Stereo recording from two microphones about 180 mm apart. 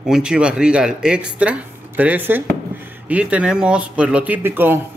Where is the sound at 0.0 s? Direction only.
5° right (ahead or behind).